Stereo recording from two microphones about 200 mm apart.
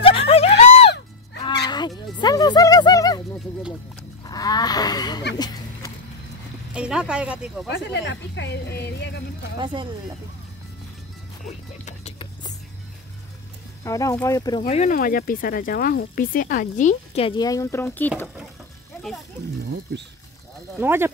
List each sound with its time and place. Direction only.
0.0 s a sound: 30° left (ahead or behind)
0.6 s music: 35° left (ahead or behind)
1.4 s fowl: 20° left (ahead or behind)
2.1 s music: 20° left (ahead or behind)
4.2 s livestock: 20° left (ahead or behind)
5.4 s a sound: 20° left (ahead or behind)
6.7 s speech: 5° right (ahead or behind)
7.7 s speech: 60° left (ahead or behind)
11.8 s music: 35° left (ahead or behind)
13.8 s speech: 15° left (ahead or behind)
14.7 s speech: 35° left (ahead or behind); by 18.1 s 10° left (ahead or behind)
20.7 s speech: 10° right (ahead or behind)